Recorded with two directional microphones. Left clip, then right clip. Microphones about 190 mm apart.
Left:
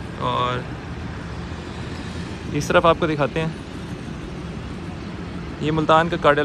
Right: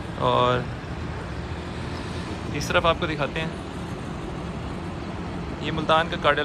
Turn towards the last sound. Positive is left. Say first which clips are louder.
# left 5 dB
turn(degrees=-10)  # may be behind; listen again after turning